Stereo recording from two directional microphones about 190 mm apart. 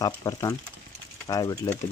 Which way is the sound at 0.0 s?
20° left (ahead or behind).